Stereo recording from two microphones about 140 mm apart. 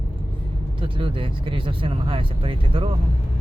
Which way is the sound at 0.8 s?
40° right (ahead or behind).